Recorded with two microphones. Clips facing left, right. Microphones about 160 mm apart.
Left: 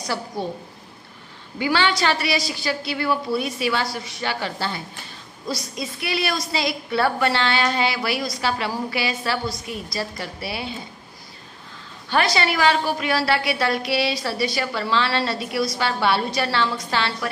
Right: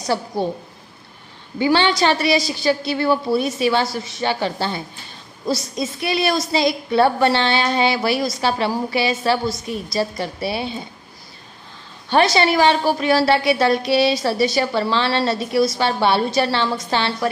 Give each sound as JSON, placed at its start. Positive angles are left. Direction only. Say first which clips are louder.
{"t": 0.0, "sound": "a woman's voice", "louder": "right 6 dB", "side_deg": -25}
{"t": 1.6, "sound": "a woman's voice", "louder": "right 4 dB", "side_deg": -25}
{"t": 12.4, "sound": "a woman's voice", "louder": "right 4 dB", "side_deg": -30}